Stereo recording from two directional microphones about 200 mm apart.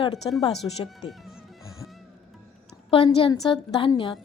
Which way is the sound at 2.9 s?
25° left (ahead or behind).